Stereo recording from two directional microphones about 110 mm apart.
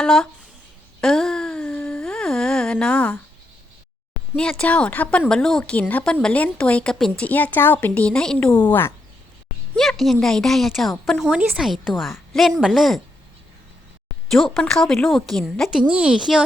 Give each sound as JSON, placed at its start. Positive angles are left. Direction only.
{"t": 0.0, "sound": "speech", "side_deg": 5}
{"t": 1.0, "sound": "a sound", "side_deg": 5}
{"t": 2.0, "sound": "a sound", "side_deg": 5}
{"t": 4.4, "sound": "a woman's voice", "side_deg": 10}
{"t": 9.7, "sound": "a woman's voice", "side_deg": 0}
{"t": 14.3, "sound": "a woman's voice", "side_deg": 0}